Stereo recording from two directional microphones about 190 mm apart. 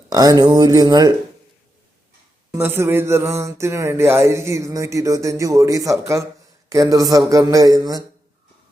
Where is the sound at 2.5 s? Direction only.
10° right (ahead or behind).